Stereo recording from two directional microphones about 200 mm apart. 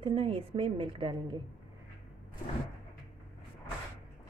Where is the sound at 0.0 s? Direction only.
25° right (ahead or behind).